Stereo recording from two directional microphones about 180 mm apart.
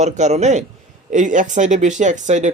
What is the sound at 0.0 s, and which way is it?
Speech, 40° right (ahead or behind).